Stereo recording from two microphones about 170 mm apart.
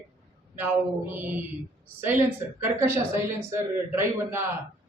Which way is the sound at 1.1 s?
10° right (ahead or behind).